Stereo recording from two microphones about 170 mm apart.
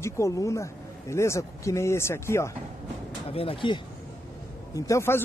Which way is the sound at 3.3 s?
35° left (ahead or behind).